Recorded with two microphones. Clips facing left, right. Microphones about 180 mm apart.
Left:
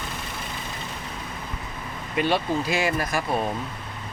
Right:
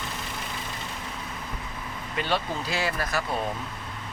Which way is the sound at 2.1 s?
15° left (ahead or behind).